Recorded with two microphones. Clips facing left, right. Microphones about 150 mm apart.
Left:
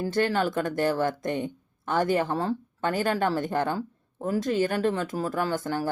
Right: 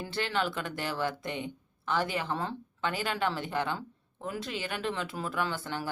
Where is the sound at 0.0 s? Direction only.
45° left (ahead or behind).